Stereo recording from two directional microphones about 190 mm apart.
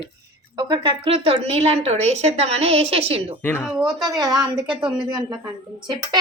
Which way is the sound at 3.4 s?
10° left (ahead or behind).